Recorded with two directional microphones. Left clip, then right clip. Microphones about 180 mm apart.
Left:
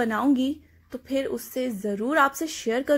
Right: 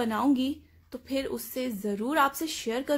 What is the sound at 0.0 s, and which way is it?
Speech, 15° left (ahead or behind).